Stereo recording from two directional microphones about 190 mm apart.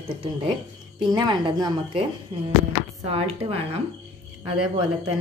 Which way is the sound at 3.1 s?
30° right (ahead or behind).